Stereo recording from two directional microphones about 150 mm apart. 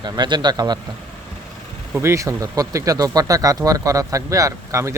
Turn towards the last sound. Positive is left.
turn(degrees=-20)  # may be behind; listen again after turning